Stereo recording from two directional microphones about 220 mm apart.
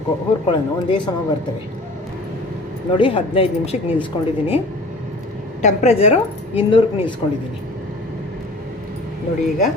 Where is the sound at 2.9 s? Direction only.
25° left (ahead or behind).